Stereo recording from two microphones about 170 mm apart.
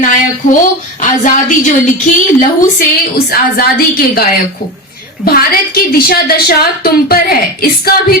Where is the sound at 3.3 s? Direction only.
60° left (ahead or behind).